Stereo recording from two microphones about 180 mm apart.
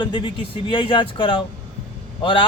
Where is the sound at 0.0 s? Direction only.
25° left (ahead or behind).